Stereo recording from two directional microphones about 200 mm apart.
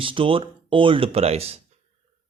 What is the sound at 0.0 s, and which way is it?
Speech, 25° right (ahead or behind).